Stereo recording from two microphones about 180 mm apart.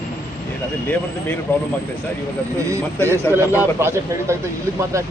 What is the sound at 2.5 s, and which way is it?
Speech, 20° right (ahead or behind).